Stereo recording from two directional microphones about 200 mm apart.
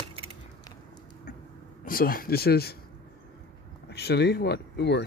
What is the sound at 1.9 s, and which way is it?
Speech, 45° left (ahead or behind).